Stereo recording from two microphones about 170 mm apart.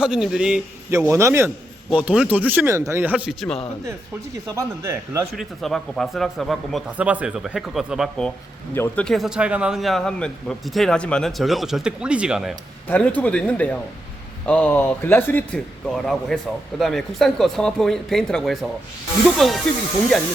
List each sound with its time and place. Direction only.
0.0 s speech: 5° right (ahead or behind)
0.9 s a man's voice: 15° right (ahead or behind)
4.5 s a man's voice: 15° right (ahead or behind)
5.4 s speech: centre (ahead or behind)
8.7 s speech: 10° left (ahead or behind)
12.9 s speech: 10° left (ahead or behind)